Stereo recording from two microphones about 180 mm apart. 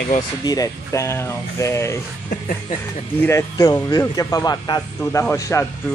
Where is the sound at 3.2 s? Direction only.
15° left (ahead or behind).